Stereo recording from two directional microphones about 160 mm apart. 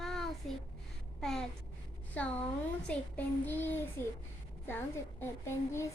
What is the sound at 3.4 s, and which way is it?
Speech, 10° left (ahead or behind).